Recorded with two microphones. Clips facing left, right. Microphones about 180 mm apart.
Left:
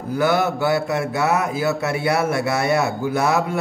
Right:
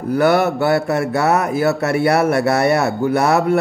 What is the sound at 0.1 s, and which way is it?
Speech, 65° right (ahead or behind).